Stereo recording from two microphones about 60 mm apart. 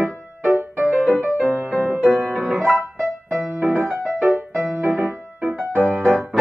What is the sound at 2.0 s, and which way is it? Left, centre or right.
Music, centre.